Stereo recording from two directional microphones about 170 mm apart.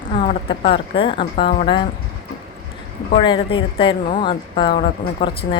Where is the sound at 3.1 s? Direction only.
30° left (ahead or behind).